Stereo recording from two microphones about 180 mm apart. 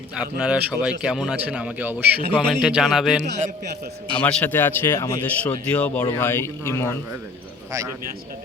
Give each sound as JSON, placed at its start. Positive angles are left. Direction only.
{"t": 0.2, "sound": "a man's voice", "side_deg": -5}
{"t": 4.2, "sound": "speech", "side_deg": 10}
{"t": 7.7, "sound": "a man's voice", "side_deg": -15}